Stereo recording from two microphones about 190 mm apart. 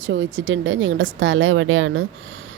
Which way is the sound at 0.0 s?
70° right (ahead or behind).